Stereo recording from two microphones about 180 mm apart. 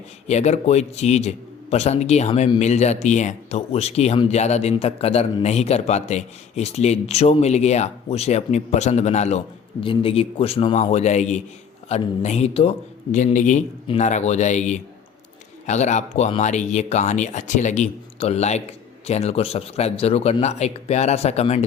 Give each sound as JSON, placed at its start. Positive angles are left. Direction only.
{"t": 0.3, "sound": "a man's voice", "side_deg": 40}